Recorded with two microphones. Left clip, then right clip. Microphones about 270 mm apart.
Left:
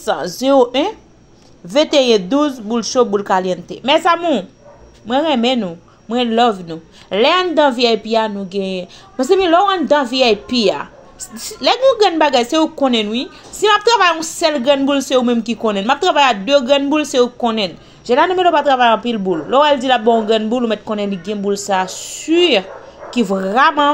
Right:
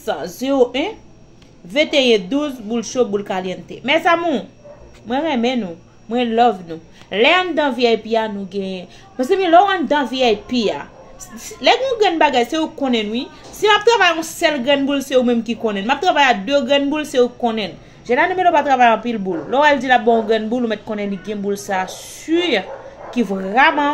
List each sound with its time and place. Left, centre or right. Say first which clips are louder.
0.0 s speech: left 5 dB; left
18.6 s a woman's voice: left 1 dB; left
20.1 s speech: left 2 dB; left